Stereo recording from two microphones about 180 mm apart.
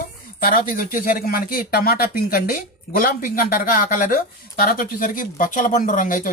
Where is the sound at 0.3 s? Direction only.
50° left (ahead or behind).